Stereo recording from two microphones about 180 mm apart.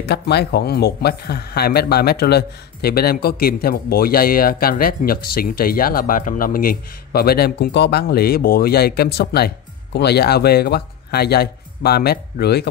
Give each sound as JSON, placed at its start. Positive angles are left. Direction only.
{"t": 0.0, "sound": "speech", "side_deg": 65}